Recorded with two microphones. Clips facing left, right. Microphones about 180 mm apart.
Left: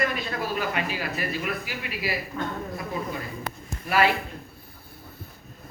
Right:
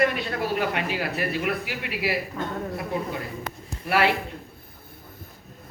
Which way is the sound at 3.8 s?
65° right (ahead or behind).